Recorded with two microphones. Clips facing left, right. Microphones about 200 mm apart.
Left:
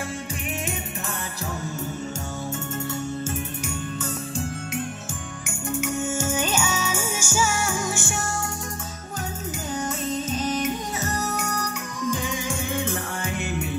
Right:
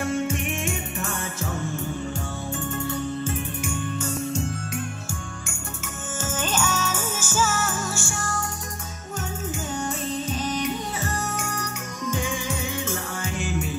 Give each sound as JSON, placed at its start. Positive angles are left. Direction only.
{"t": 3.3, "sound": "music", "side_deg": 40}
{"t": 6.1, "sound": "music", "side_deg": 10}
{"t": 10.6, "sound": "music", "side_deg": 40}
{"t": 12.7, "sound": "music", "side_deg": 60}